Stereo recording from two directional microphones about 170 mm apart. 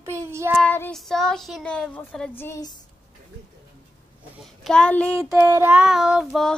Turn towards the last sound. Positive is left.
turn(degrees=0)  # may be behind; listen again after turning